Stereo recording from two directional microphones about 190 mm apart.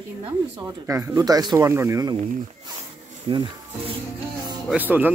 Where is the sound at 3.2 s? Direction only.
25° right (ahead or behind).